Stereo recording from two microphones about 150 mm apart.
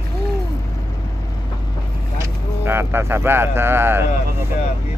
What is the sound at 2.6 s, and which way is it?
Speech, 15° right (ahead or behind).